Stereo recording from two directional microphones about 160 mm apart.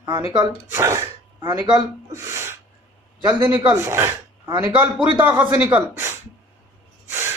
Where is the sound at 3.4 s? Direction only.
15° right (ahead or behind).